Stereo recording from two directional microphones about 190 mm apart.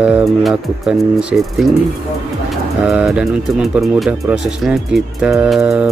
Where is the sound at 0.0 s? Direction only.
5° right (ahead or behind).